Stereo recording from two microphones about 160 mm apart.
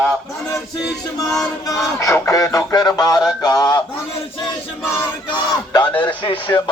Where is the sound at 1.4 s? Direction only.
20° left (ahead or behind).